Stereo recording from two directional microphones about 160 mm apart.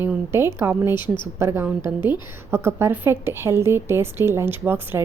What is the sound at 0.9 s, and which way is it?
Speech, 30° left (ahead or behind).